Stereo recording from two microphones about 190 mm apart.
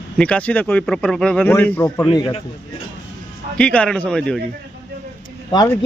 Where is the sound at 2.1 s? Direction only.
25° left (ahead or behind).